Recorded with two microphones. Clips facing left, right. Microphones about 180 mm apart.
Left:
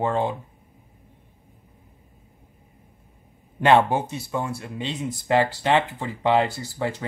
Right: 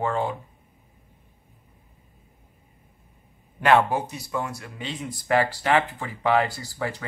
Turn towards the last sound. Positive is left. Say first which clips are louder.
# left 3 dB
turn(degrees=25)  # may be behind; listen again after turning